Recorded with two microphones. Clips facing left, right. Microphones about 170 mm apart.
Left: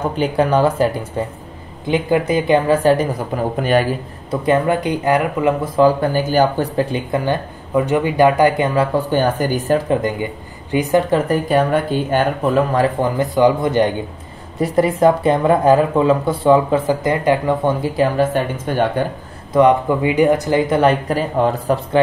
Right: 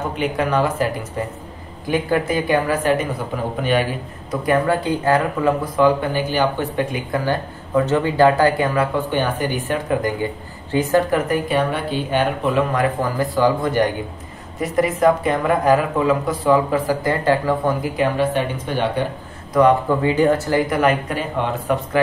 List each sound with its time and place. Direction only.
0.1 s speech: 35° left (ahead or behind)
4.3 s speech: 20° left (ahead or behind)
5.8 s speech: 35° left (ahead or behind)
7.1 s speech: 15° left (ahead or behind)
8.7 s speech: 40° left (ahead or behind)
10.7 s speech: 15° left (ahead or behind)
11.2 s speech: 40° left (ahead or behind)
12.7 s speech: 30° left (ahead or behind)
13.2 s speech: 20° left (ahead or behind); by 19.0 s 45° left (ahead or behind)
19.5 s speech: 20° left (ahead or behind); by 21.7 s 40° left (ahead or behind)